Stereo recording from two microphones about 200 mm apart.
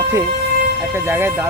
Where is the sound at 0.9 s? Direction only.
10° right (ahead or behind).